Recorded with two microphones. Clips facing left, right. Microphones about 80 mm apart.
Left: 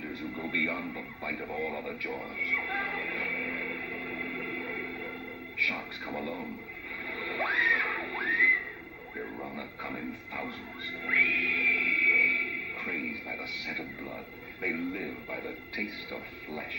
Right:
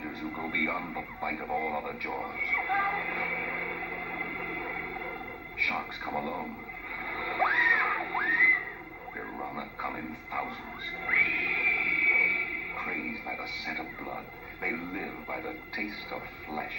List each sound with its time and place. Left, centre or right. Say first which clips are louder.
0.4 s speech: right 1 dB; right
2.5 s a sound: right 5 dB; right
6.0 s speech: right 2 dB; right
7.1 s a sound: right 4 dB; right
9.6 s speech: right 2 dB; right
11.1 s music: even; right
15.2 s speech: right 2 dB; right